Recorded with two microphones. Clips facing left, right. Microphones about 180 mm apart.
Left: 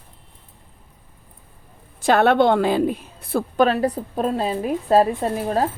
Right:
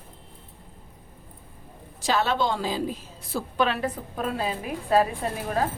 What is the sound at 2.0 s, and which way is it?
A woman's voice, 60° left (ahead or behind).